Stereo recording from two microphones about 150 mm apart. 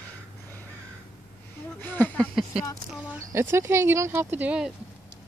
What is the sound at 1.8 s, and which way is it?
Speech, 10° left (ahead or behind).